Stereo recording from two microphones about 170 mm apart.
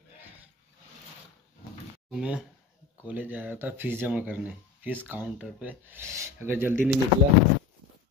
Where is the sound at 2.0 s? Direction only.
5° right (ahead or behind).